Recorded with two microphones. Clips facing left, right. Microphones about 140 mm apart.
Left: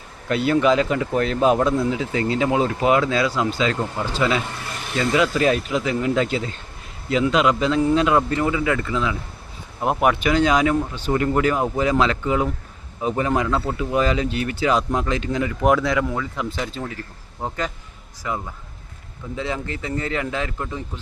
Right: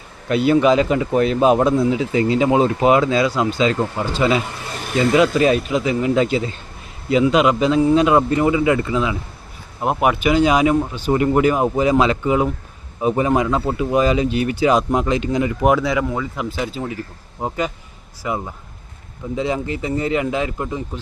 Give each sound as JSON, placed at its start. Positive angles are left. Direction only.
{"t": 0.3, "sound": "speech", "side_deg": -15}
{"t": 9.8, "sound": "speech", "side_deg": -5}
{"t": 15.6, "sound": "speech", "side_deg": 0}